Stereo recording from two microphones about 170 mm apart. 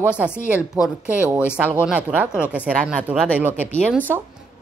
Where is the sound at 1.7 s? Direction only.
10° right (ahead or behind).